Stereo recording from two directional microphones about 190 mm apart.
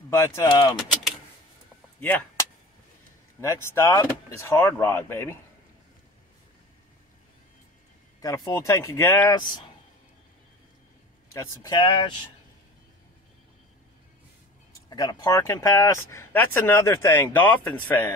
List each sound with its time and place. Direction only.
0.1 s speech: 15° left (ahead or behind)
2.0 s speech: 10° left (ahead or behind)
3.3 s speech: 15° left (ahead or behind)
8.2 s speech: 20° left (ahead or behind)
11.3 s speech: 20° left (ahead or behind)
14.9 s speech: 20° left (ahead or behind)